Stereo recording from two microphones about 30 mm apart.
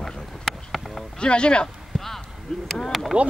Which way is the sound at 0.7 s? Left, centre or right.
Centre.